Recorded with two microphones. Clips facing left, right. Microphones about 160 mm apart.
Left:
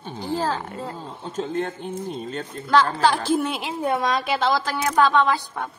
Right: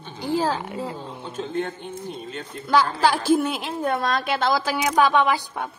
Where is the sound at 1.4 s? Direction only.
45° left (ahead or behind).